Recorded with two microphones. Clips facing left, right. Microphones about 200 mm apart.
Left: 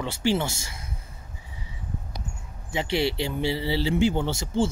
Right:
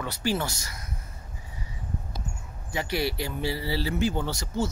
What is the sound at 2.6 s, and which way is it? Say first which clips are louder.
Speech: left 3 dB; 25° left (ahead or behind).